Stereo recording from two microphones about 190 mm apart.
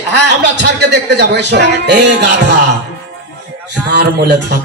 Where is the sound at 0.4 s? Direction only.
65° right (ahead or behind).